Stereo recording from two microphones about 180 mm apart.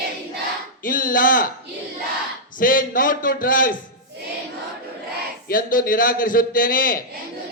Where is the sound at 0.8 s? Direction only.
50° left (ahead or behind).